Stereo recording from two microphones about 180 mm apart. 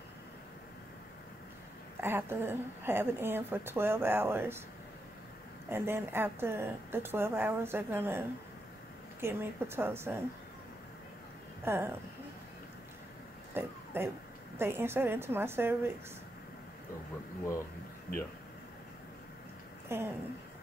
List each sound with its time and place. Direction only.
2.0 s a woman's voice: 10° right (ahead or behind)
5.7 s a woman's voice: 15° right (ahead or behind)
11.6 s speech: 15° right (ahead or behind)
13.5 s a sound: 10° right (ahead or behind)
14.6 s a woman's voice: 10° right (ahead or behind)
18.1 s speech: 55° left (ahead or behind)
19.9 s a woman's voice: 10° right (ahead or behind)